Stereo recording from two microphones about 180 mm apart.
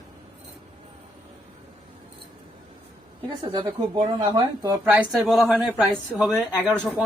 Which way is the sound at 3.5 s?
25° right (ahead or behind).